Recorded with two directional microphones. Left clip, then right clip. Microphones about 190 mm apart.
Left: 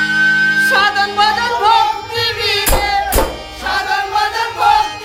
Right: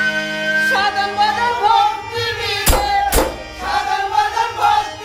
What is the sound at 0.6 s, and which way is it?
Music, 45° left (ahead or behind).